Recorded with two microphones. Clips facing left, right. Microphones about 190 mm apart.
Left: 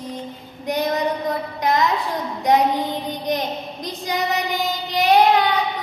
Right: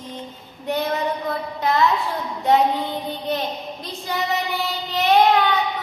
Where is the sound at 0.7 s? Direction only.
15° left (ahead or behind).